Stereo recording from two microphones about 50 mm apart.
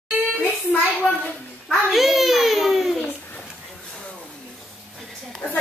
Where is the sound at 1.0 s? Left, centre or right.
Centre.